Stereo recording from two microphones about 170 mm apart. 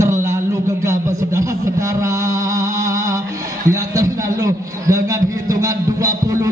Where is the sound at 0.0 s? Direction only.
15° right (ahead or behind).